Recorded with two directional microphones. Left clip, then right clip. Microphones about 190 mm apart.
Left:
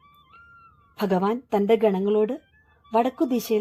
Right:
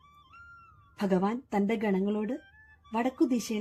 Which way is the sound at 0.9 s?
40° left (ahead or behind).